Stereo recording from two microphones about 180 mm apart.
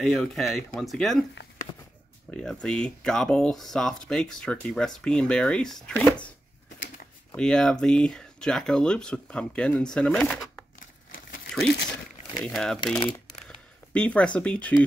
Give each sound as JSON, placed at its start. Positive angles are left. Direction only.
{"t": 0.0, "sound": "speech", "side_deg": 0}
{"t": 2.3, "sound": "speech", "side_deg": 5}
{"t": 7.3, "sound": "speech", "side_deg": 5}
{"t": 11.3, "sound": "crumpling", "side_deg": 60}
{"t": 12.4, "sound": "speech", "side_deg": 5}